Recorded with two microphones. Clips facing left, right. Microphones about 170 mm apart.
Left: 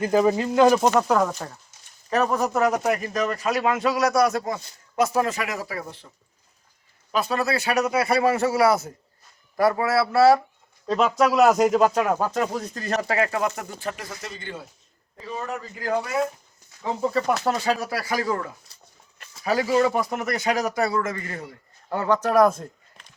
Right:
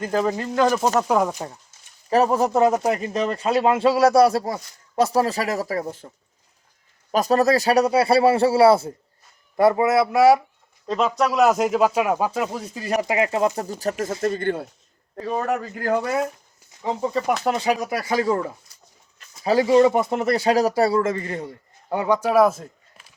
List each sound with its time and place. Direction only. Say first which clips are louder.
0.0 s speech: left 3 dB; 10° left (ahead or behind)
0.9 s speech: right 1 dB; 10° right (ahead or behind)
2.0 s a man's voice: right 4 dB; 30° right (ahead or behind)
7.1 s a man's voice: right 6 dB; 40° right (ahead or behind); by 10.4 s 15° right (ahead or behind)
10.8 s speech: left 1 dB; centre (ahead or behind); by 13.9 s 40° right (ahead or behind)
14.2 s a man's voice: right 13 dB; 55° right (ahead or behind)
17.0 s a man's voice: even; 10° right (ahead or behind); by 21.5 s 25° right (ahead or behind)
21.8 s speech: right 2 dB; 15° right (ahead or behind)